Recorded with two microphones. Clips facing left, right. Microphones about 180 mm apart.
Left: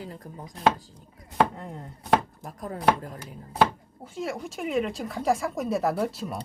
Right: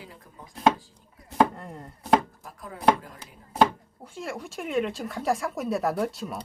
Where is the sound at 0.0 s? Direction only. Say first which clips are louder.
Left 7 dB; 40° left (ahead or behind).